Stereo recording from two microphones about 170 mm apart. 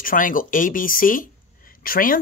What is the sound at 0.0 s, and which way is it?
Speech, 55° left (ahead or behind).